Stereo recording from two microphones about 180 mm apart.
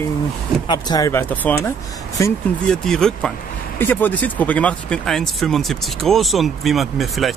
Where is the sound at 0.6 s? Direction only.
20° left (ahead or behind).